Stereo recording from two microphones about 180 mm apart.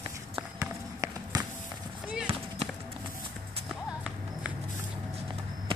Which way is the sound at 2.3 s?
35° right (ahead or behind).